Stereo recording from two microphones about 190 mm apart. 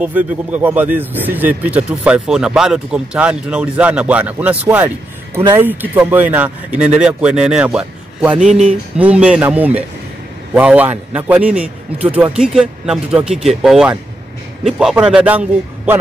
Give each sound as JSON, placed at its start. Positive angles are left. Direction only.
{"t": 0.0, "sound": "a man's voice", "side_deg": -10}